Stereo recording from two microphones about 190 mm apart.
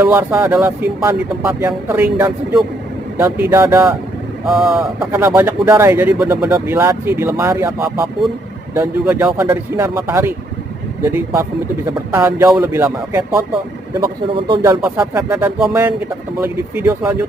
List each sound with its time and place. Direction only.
0.1 s speech: 10° right (ahead or behind)
14.3 s speech: 25° right (ahead or behind)
14.8 s speech: 10° right (ahead or behind)